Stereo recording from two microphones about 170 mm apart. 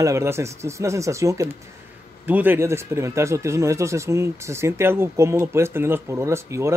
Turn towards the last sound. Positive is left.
turn(degrees=-15)  # may be behind; listen again after turning